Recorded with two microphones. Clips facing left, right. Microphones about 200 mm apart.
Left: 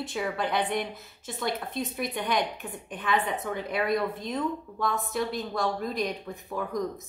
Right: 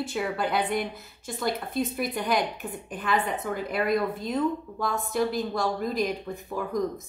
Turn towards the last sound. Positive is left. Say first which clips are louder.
# right 2 dB
turn(degrees=0)  # may be behind; listen again after turning